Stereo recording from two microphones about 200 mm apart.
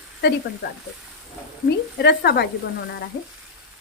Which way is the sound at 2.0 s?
55° left (ahead or behind).